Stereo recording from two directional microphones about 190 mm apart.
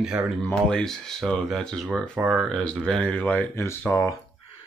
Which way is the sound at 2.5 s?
5° left (ahead or behind).